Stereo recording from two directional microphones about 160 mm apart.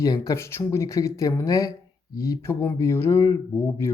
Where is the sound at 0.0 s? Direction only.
20° left (ahead or behind).